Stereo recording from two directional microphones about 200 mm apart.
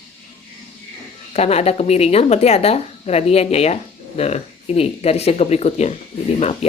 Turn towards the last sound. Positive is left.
turn(degrees=30)  # may be behind; listen again after turning